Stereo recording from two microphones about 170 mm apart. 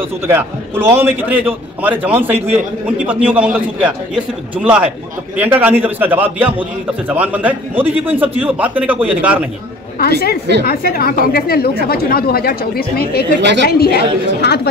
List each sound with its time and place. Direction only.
0.3 s a man's voice: 15° right (ahead or behind)
9.9 s speech: 65° left (ahead or behind)
13.4 s a woman's voice: 90° right
13.7 s a woman's voice: 65° left (ahead or behind)